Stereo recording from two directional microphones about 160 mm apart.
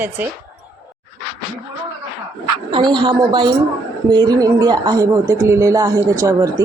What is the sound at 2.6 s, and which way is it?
Speech, 30° right (ahead or behind).